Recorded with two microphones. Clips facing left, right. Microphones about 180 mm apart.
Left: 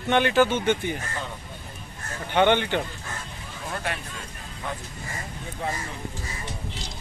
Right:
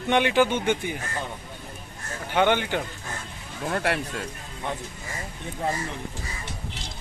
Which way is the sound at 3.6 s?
65° right (ahead or behind).